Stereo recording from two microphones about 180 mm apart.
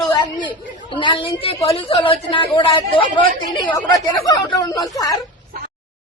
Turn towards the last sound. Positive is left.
turn(degrees=20)  # may be behind; listen again after turning